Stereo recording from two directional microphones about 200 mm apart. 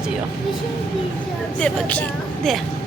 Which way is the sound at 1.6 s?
5° left (ahead or behind).